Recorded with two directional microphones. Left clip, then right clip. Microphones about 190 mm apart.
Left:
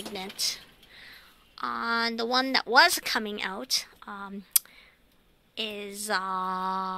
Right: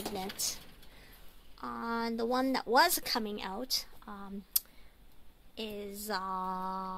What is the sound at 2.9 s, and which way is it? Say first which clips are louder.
Speech: left 5 dB; 15° left (ahead or behind).